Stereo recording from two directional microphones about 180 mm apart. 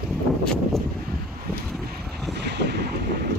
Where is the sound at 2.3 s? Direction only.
70° right (ahead or behind).